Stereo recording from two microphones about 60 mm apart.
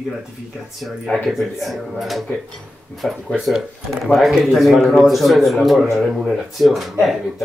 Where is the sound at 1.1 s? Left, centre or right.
Centre.